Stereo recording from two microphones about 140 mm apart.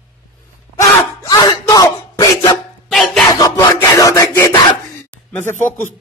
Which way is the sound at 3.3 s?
25° left (ahead or behind).